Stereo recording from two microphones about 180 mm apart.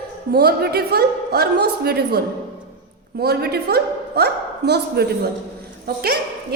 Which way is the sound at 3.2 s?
60° right (ahead or behind).